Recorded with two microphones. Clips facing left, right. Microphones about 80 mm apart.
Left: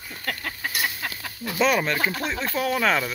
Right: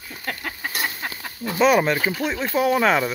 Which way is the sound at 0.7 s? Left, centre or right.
Right.